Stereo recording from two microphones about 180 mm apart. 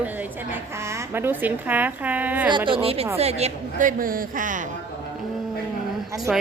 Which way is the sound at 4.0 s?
50° right (ahead or behind).